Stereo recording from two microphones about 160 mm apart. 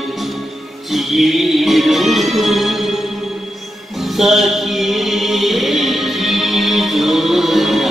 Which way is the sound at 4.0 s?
Centre (ahead or behind).